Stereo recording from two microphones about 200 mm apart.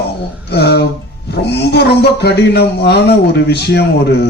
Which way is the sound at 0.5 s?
55° left (ahead or behind).